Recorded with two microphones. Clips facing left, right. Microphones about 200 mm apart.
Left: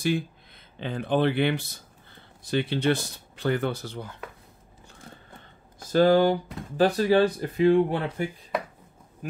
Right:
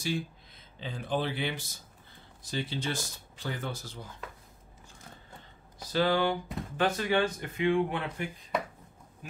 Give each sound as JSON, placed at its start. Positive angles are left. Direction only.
{"t": 0.7, "sound": "speech", "side_deg": 65}
{"t": 5.8, "sound": "speech", "side_deg": 45}